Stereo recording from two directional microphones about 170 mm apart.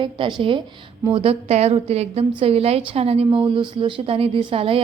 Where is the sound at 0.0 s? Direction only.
30° right (ahead or behind).